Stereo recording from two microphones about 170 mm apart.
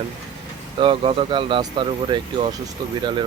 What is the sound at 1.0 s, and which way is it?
Speech, 30° right (ahead or behind).